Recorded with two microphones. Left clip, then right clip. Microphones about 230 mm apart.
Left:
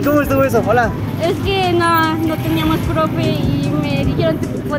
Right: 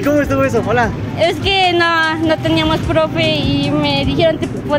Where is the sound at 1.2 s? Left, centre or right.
Right.